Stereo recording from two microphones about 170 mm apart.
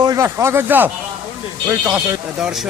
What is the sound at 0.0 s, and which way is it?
Speech, 20° right (ahead or behind).